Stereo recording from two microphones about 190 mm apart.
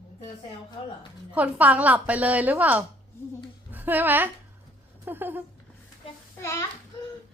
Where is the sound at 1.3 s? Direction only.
5° right (ahead or behind).